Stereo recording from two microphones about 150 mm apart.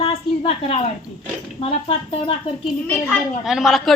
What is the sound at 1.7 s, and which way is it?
Speech, 40° left (ahead or behind).